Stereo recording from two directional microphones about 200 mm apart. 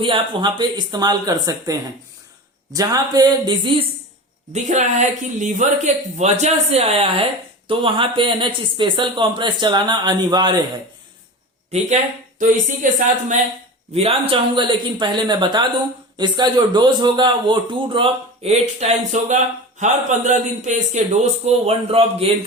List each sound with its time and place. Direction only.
0.0 s a man's voice: 25° right (ahead or behind)
2.7 s a man's voice: 20° right (ahead or behind)
4.5 s a man's voice: 35° right (ahead or behind); by 10.6 s 20° right (ahead or behind)
11.7 s speech: 35° right (ahead or behind)
13.9 s a man's voice: 30° right (ahead or behind)